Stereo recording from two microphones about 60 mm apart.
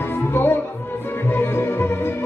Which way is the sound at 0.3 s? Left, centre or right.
Left.